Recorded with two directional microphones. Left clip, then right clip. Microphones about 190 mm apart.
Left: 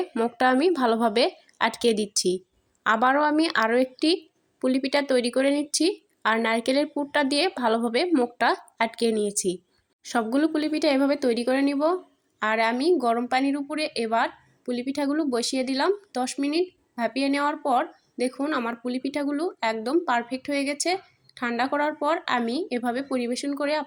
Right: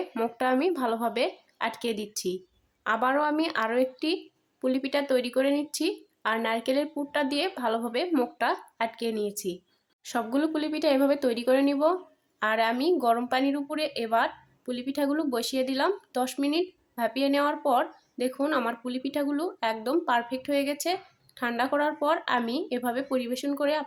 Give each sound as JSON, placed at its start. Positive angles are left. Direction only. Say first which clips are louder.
{"t": 0.0, "sound": "speech", "louder": "left 5 dB", "side_deg": 20}